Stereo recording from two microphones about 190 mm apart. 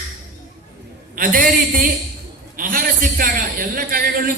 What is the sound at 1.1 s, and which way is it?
A man's voice, 50° right (ahead or behind).